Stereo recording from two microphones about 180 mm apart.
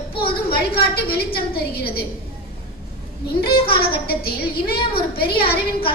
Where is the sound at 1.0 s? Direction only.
60° left (ahead or behind).